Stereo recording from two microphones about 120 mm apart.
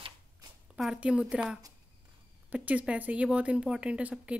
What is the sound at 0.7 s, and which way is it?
A woman's voice, 5° right (ahead or behind).